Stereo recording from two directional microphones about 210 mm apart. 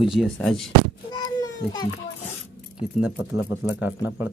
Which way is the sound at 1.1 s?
20° left (ahead or behind).